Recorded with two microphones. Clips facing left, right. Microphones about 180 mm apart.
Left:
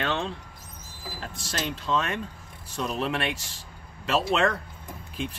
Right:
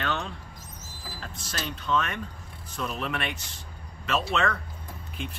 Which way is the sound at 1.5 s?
25° left (ahead or behind).